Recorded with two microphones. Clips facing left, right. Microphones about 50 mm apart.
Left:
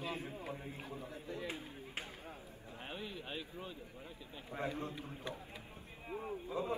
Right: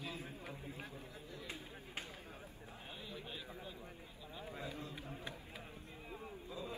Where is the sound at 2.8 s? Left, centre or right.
Left.